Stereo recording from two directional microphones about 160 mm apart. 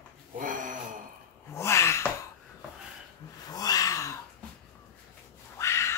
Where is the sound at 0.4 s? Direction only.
55° right (ahead or behind).